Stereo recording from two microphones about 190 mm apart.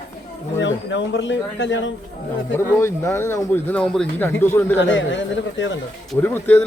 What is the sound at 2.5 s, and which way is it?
Speech, 15° left (ahead or behind).